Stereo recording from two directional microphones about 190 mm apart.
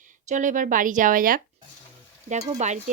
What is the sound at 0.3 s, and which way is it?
Speech, 40° right (ahead or behind).